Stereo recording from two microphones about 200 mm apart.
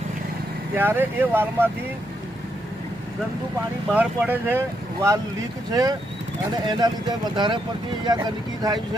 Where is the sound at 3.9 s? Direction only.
10° right (ahead or behind).